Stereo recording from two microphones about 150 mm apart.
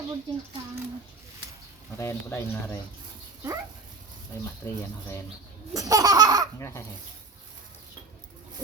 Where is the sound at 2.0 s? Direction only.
15° left (ahead or behind).